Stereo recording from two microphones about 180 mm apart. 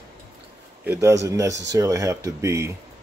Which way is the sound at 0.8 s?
15° right (ahead or behind).